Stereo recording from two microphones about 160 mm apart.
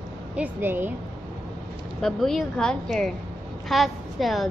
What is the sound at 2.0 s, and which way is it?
A woman's voice, centre (ahead or behind).